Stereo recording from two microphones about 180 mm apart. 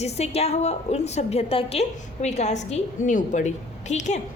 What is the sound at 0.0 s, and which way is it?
A woman's voice, 35° left (ahead or behind).